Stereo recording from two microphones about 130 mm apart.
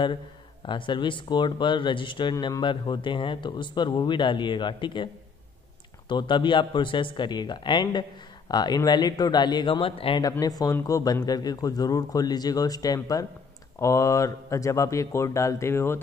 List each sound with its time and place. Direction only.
0.7 s speech: 40° left (ahead or behind)
2.3 s speech: 25° left (ahead or behind)
2.6 s speech: 40° left (ahead or behind)
10.4 s speech: 30° left (ahead or behind)